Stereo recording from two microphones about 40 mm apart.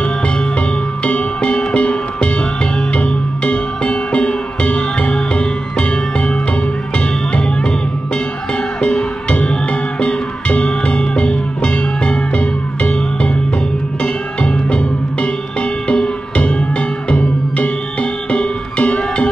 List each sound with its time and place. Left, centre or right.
0.6 s music: left
8.8 s music: centre
18.3 s music: left